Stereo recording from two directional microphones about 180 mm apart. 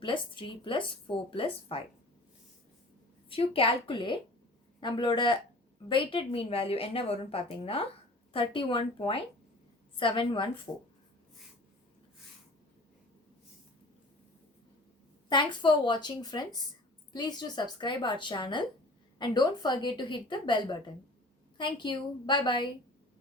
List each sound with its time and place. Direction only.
0.0 s speech: 30° left (ahead or behind)
3.2 s a woman's voice: 30° left (ahead or behind)
10.7 s speech: 15° left (ahead or behind)
15.3 s speech: 25° left (ahead or behind)